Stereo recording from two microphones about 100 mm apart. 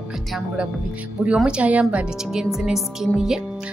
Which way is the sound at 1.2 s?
10° right (ahead or behind).